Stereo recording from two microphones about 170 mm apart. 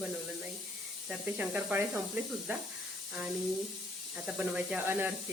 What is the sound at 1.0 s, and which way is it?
Speech, 5° right (ahead or behind).